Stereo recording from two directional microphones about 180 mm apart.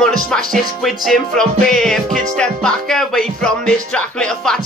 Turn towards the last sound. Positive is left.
turn(degrees=5)  # may be behind; listen again after turning